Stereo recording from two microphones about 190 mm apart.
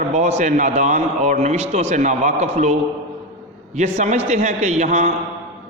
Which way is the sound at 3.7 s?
40° right (ahead or behind).